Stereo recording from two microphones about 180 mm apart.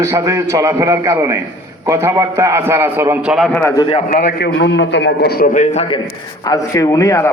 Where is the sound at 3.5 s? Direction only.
15° left (ahead or behind).